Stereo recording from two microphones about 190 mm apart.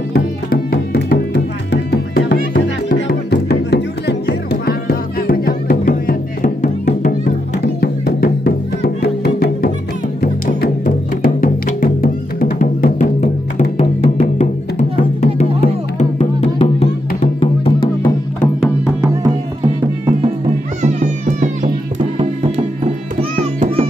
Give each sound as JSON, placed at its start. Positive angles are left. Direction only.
{"t": 0.1, "sound": "music", "side_deg": 55}
{"t": 20.8, "sound": "music", "side_deg": -40}
{"t": 23.3, "sound": "music", "side_deg": -40}